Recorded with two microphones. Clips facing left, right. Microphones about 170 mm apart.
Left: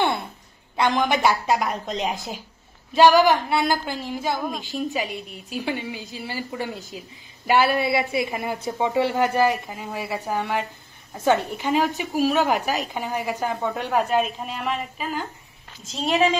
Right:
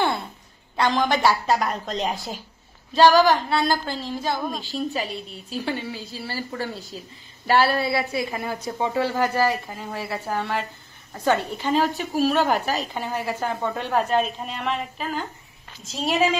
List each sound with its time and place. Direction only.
0.7 s a woman's voice: 15° left (ahead or behind)
2.9 s a woman's voice: 15° left (ahead or behind)
9.7 s a woman's voice: 5° left (ahead or behind)